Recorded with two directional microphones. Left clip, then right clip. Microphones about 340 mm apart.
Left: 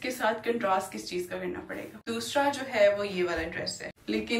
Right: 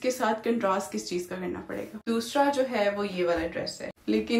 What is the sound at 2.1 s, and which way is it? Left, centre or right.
Speech, centre.